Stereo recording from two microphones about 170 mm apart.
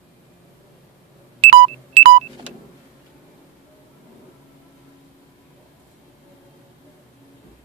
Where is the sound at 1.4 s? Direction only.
35° right (ahead or behind).